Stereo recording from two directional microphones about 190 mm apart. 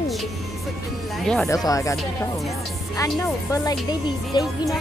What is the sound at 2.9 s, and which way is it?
Speech, 15° left (ahead or behind).